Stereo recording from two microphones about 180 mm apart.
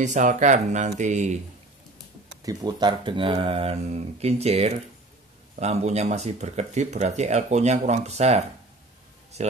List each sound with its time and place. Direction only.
0.0 s speech: 45° right (ahead or behind)
2.4 s speech: 25° right (ahead or behind)